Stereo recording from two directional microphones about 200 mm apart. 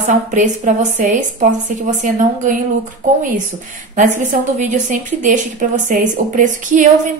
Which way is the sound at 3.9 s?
40° right (ahead or behind).